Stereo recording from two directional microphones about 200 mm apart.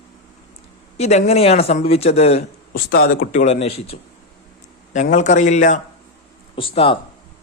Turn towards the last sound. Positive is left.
turn(degrees=30)  # may be behind; listen again after turning